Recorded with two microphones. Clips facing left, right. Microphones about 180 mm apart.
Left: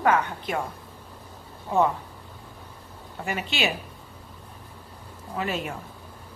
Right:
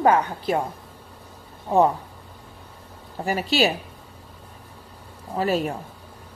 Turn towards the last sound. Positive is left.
turn(degrees=-35)  # may be behind; listen again after turning